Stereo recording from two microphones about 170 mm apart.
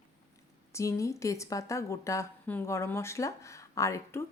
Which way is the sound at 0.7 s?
20° left (ahead or behind).